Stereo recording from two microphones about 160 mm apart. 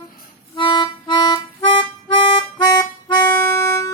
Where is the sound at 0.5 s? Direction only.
30° left (ahead or behind).